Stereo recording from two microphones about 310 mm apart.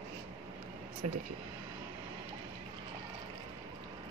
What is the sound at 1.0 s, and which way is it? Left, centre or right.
Speech, right.